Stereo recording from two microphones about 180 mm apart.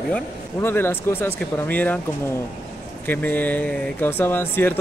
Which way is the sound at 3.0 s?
10° left (ahead or behind).